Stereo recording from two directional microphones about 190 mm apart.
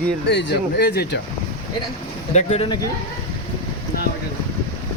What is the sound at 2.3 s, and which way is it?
Speech, 35° left (ahead or behind).